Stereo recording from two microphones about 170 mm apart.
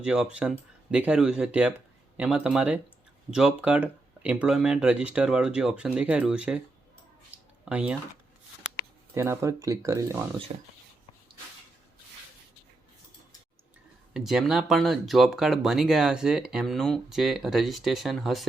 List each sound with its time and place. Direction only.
0.0 s speech: 5° right (ahead or behind)
7.3 s a sound: 5° right (ahead or behind)
9.1 s speech: 15° right (ahead or behind)
10.5 s speech: 35° right (ahead or behind)
14.1 s speech: centre (ahead or behind)